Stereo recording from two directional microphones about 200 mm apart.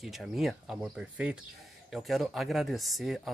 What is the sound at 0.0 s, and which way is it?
Speech, centre (ahead or behind).